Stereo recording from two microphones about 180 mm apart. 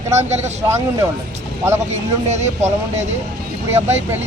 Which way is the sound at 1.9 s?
40° right (ahead or behind).